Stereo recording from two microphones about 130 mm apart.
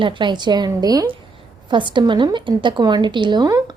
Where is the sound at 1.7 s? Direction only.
40° right (ahead or behind).